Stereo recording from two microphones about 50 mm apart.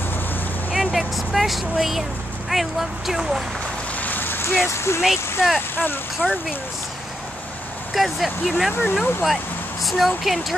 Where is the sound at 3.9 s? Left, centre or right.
Left.